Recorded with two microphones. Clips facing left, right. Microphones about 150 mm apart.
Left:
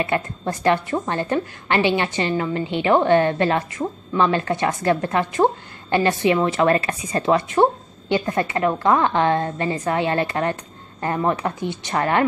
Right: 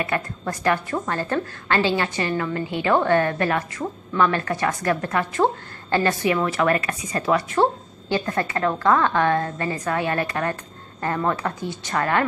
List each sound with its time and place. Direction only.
0.0 s a woman's voice: 25° left (ahead or behind)